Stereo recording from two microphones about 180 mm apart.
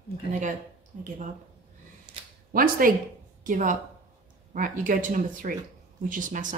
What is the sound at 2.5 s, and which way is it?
Speech, 50° right (ahead or behind).